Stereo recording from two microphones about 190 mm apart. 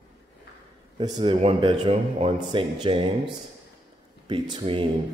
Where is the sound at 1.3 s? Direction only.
35° right (ahead or behind).